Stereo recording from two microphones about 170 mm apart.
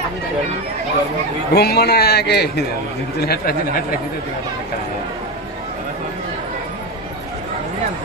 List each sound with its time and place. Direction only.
1.5 s a man's voice: 70° left (ahead or behind)